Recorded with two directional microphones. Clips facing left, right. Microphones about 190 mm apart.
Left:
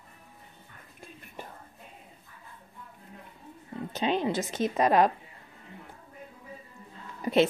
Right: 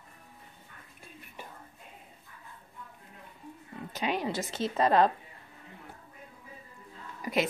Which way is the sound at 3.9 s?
25° left (ahead or behind).